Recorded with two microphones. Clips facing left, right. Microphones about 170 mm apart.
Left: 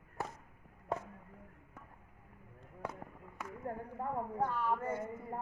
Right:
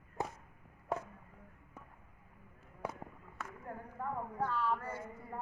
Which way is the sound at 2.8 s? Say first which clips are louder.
Right 1 dB; 10° right (ahead or behind).